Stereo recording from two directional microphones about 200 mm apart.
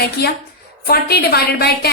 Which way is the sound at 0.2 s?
50° left (ahead or behind).